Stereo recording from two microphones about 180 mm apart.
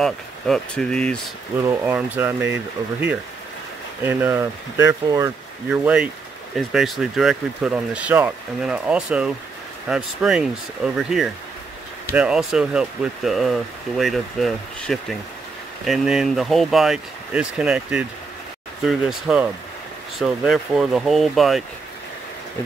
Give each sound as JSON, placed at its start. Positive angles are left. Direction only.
{"t": 0.0, "sound": "speech", "side_deg": 5}
{"t": 1.6, "sound": "speech", "side_deg": -15}
{"t": 4.0, "sound": "speech", "side_deg": -10}